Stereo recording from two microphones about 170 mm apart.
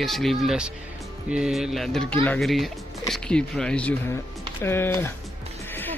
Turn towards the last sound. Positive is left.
turn(degrees=15)  # may be behind; listen again after turning